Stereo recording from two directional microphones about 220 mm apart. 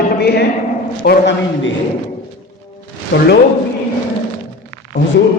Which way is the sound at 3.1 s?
60° left (ahead or behind).